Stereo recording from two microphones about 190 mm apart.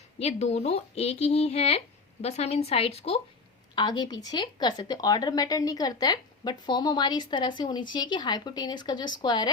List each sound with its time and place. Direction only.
0.2 s a woman's voice: 35° left (ahead or behind)